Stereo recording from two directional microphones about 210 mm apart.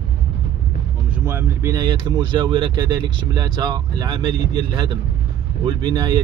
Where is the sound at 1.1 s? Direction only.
10° right (ahead or behind).